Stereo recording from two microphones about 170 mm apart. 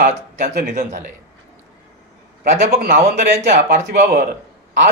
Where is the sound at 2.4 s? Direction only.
60° right (ahead or behind).